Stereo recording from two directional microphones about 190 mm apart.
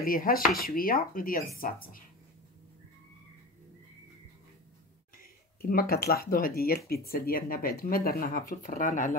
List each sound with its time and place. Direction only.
0.0 s speech: 50° left (ahead or behind)
5.6 s speech: 50° left (ahead or behind)